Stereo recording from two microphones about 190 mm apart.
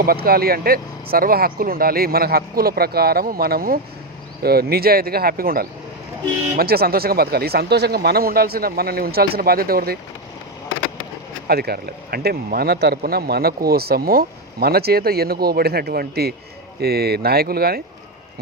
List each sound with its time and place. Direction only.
0.0 s speech: 50° right (ahead or behind)
11.4 s speech: 55° right (ahead or behind)